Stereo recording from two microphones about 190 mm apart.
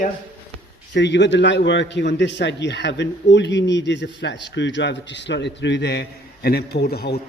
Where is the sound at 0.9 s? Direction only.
70° left (ahead or behind).